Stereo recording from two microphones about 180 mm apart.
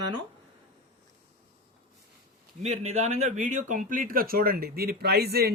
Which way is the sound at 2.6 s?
40° right (ahead or behind).